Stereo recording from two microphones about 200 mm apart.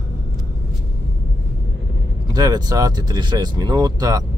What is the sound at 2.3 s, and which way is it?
Speech, 20° right (ahead or behind).